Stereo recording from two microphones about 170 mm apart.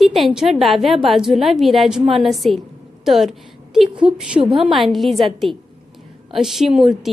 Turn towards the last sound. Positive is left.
turn(degrees=0)  # may be behind; listen again after turning